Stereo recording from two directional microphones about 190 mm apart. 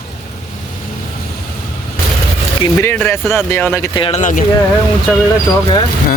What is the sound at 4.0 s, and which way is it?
Speech, 30° left (ahead or behind).